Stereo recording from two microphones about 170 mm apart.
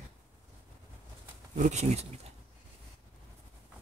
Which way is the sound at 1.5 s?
45° right (ahead or behind).